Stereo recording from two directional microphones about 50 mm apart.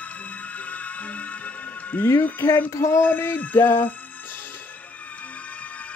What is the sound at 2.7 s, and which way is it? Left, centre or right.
Male singing, left.